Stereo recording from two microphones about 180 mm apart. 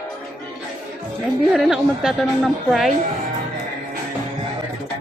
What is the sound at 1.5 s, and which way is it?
A woman's voice, 5° right (ahead or behind).